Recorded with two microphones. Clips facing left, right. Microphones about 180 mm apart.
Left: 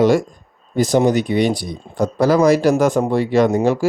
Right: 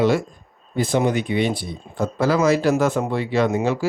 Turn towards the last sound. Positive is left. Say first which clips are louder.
# left 5 dB
turn(degrees=40)  # may be behind; listen again after turning